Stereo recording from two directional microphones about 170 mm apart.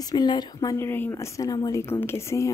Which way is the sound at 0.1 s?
25° left (ahead or behind).